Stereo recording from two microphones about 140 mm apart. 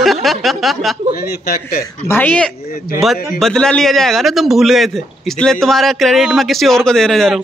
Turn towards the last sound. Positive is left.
turn(degrees=5)  # may be behind; listen again after turning